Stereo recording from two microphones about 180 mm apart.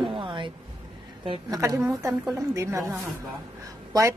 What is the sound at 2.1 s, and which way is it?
Speech, centre (ahead or behind).